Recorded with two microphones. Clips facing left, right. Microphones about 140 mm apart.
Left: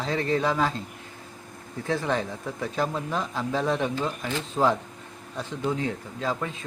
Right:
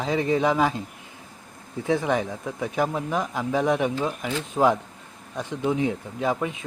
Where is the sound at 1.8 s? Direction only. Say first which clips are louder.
Right 3 dB; 15° right (ahead or behind).